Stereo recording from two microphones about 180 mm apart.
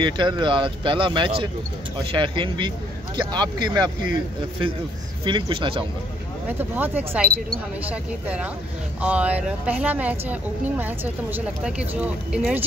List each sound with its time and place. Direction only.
0.0 s speech: 25° right (ahead or behind)
5.2 s speech: 25° right (ahead or behind)
6.6 s speech: 10° right (ahead or behind)
7.2 s speech: 55° right (ahead or behind)
7.9 s speech: 5° right (ahead or behind)